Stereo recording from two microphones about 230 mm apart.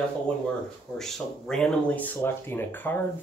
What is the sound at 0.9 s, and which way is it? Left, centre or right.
Speech, centre.